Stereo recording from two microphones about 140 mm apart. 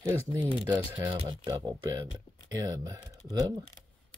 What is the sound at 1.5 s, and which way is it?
Speech, 30° right (ahead or behind).